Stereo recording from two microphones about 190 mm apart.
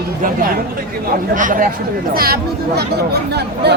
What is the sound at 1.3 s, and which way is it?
Speech, 45° right (ahead or behind).